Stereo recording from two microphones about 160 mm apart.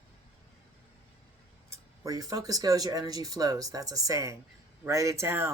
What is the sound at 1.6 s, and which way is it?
Speech, 20° right (ahead or behind).